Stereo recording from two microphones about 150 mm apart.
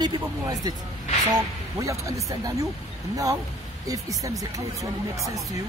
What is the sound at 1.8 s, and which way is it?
Speech, 20° right (ahead or behind).